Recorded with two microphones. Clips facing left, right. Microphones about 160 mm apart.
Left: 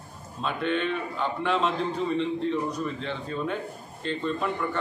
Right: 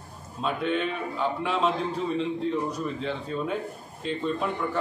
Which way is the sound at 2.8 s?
5° right (ahead or behind).